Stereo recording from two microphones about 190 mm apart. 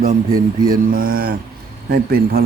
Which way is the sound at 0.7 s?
50° right (ahead or behind).